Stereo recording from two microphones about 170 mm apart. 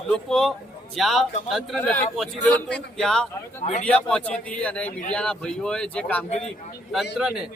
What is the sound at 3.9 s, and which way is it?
A man's voice, 5° left (ahead or behind).